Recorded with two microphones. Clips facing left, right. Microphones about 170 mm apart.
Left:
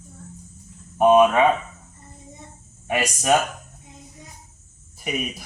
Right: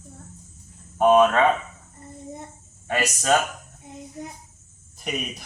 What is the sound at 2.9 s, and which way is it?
Speech, 15° left (ahead or behind).